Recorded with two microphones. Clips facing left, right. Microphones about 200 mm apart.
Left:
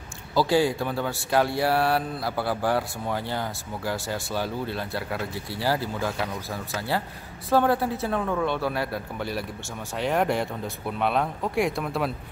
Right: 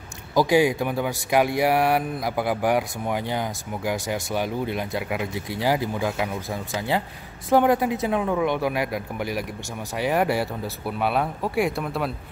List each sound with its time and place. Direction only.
0.3 s speech: 15° right (ahead or behind)